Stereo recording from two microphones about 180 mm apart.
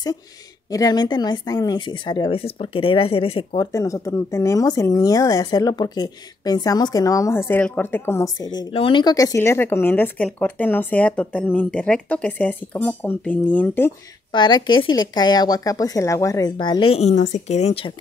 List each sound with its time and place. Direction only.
0.7 s speech: 20° left (ahead or behind)
3.7 s speech: 15° left (ahead or behind)
8.5 s speech: 30° left (ahead or behind); by 13.9 s 10° left (ahead or behind)
14.3 s speech: 25° left (ahead or behind)